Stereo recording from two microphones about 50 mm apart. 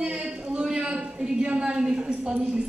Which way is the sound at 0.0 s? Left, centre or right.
Right.